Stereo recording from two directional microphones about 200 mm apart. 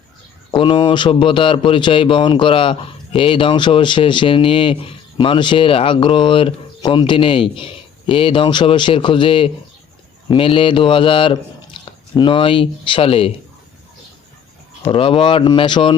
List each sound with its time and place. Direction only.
0.5 s a man's voice: 25° left (ahead or behind)
11.8 s squish: 25° left (ahead or behind)
12.1 s a man's voice: 25° left (ahead or behind)
14.8 s a man's voice: 25° left (ahead or behind)